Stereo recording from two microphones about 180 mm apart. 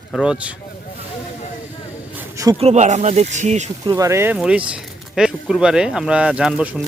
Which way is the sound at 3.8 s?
15° right (ahead or behind).